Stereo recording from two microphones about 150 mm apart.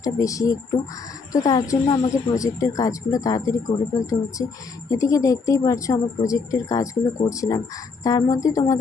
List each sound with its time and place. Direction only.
0.0 s speech: 20° left (ahead or behind)